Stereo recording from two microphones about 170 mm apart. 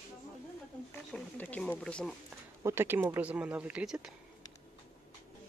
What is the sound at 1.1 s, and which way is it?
Speech, 5° left (ahead or behind).